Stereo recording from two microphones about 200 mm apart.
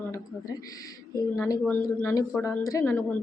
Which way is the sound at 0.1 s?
20° left (ahead or behind).